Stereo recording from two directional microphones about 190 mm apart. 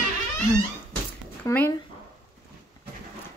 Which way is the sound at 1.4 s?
10° left (ahead or behind).